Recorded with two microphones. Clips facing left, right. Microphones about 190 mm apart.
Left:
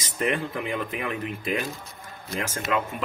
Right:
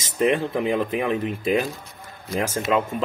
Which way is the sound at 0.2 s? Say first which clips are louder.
Right 6 dB; 30° right (ahead or behind).